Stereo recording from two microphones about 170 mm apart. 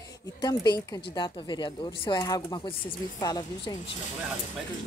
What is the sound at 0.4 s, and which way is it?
Speech, 25° left (ahead or behind).